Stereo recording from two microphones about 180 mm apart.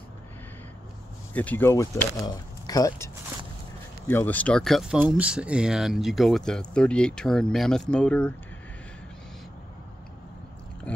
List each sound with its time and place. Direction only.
1.3 s speech: 10° left (ahead or behind)
4.1 s speech: 10° left (ahead or behind)
10.9 s speech: 10° left (ahead or behind)